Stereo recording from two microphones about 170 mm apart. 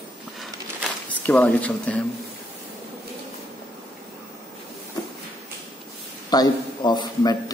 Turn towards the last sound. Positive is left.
turn(degrees=25)  # may be behind; listen again after turning